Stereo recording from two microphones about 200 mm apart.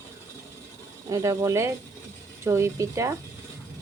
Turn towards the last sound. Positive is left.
turn(degrees=-15)  # may be behind; listen again after turning